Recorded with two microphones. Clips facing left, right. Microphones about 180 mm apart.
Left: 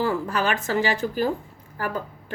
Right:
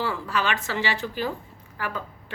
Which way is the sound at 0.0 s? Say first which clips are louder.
Left 3 dB; 40° left (ahead or behind).